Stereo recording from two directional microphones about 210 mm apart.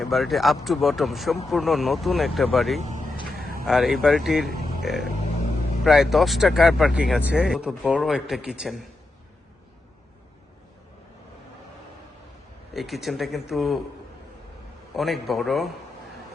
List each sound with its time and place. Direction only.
0.0 s speech: centre (ahead or behind)
2.8 s a sound: 35° right (ahead or behind)
3.3 s a sound: 45° right (ahead or behind)
3.7 s speech: centre (ahead or behind)
12.7 s speech: centre (ahead or behind)
14.9 s speech: centre (ahead or behind)